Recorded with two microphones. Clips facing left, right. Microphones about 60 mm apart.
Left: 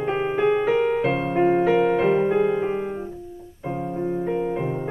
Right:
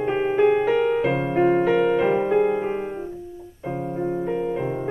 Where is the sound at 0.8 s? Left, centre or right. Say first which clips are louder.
Right 1 dB; centre.